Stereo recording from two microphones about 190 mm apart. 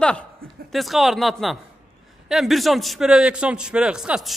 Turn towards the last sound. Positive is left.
turn(degrees=-5)  # may be behind; listen again after turning